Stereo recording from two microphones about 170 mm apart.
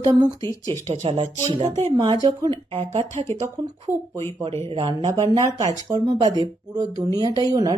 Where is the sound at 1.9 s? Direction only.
25° right (ahead or behind).